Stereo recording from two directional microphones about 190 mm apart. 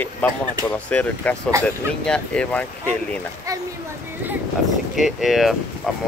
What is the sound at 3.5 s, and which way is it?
Speech, 15° right (ahead or behind).